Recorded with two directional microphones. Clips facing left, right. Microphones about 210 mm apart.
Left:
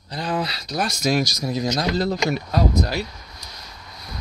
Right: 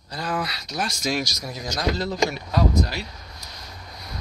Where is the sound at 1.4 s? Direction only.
25° left (ahead or behind).